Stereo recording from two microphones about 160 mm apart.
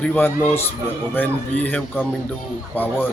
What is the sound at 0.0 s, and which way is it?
A man's voice, 10° left (ahead or behind).